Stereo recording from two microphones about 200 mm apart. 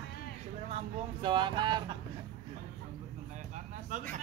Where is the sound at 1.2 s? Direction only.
25° right (ahead or behind).